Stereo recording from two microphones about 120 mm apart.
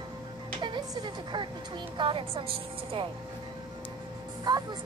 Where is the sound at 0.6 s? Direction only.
40° right (ahead or behind).